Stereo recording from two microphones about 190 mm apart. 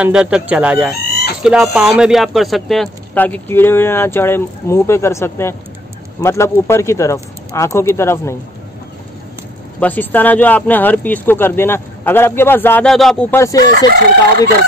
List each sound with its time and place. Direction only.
0.0 s speech: 5° right (ahead or behind); by 8.4 s 15° left (ahead or behind)
9.8 s speech: 10° left (ahead or behind)
13.7 s chicken: 50° right (ahead or behind)